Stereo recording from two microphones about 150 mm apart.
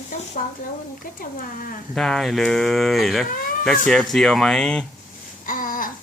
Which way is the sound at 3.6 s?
5° left (ahead or behind).